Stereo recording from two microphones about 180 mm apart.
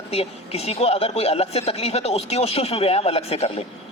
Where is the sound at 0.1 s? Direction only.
35° left (ahead or behind).